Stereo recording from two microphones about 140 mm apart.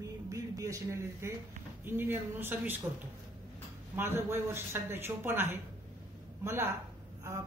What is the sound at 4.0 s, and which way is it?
A woman's voice, 15° right (ahead or behind).